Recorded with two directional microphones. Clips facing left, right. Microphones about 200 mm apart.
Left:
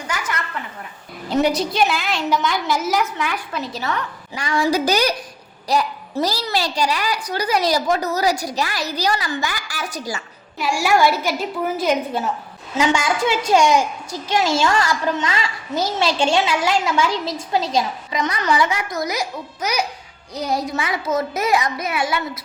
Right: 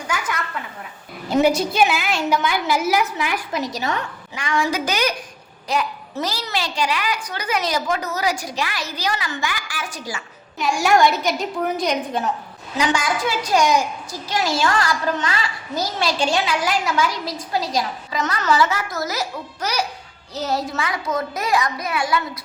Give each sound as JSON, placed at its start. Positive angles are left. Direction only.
{"t": 1.3, "sound": "a woman's voice", "side_deg": -5}
{"t": 3.8, "sound": "a woman's voice", "side_deg": -20}
{"t": 4.4, "sound": "a child's voice", "side_deg": 35}
{"t": 10.8, "sound": "a woman's voice", "side_deg": 5}
{"t": 12.7, "sound": "a child's voice", "side_deg": 25}
{"t": 18.2, "sound": "a woman's voice", "side_deg": 15}
{"t": 20.7, "sound": "a child's voice", "side_deg": 20}